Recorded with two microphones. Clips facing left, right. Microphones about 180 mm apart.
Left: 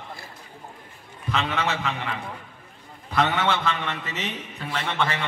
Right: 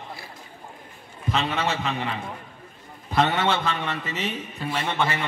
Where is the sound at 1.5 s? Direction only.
20° right (ahead or behind).